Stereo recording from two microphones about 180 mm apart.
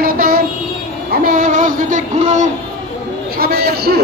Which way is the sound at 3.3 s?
60° right (ahead or behind).